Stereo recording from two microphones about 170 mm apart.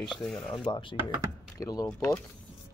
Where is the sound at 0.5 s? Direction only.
30° left (ahead or behind).